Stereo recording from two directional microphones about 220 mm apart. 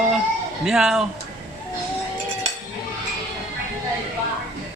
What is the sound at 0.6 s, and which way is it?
Speech, centre (ahead or behind).